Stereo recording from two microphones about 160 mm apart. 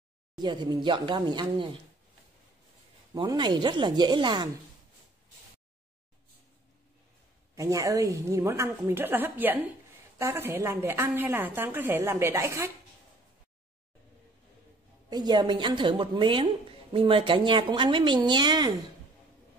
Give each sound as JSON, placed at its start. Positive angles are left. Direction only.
{"t": 0.4, "sound": "a woman's voice", "side_deg": -25}
{"t": 3.2, "sound": "a woman's voice", "side_deg": -25}
{"t": 7.5, "sound": "a woman's voice", "side_deg": -20}
{"t": 15.0, "sound": "a woman's voice", "side_deg": -25}